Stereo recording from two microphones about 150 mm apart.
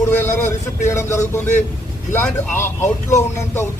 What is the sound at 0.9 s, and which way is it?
Speech, 20° left (ahead or behind).